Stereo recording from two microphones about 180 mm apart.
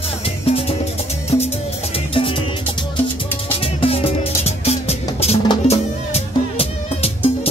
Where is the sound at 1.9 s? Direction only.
30° left (ahead or behind).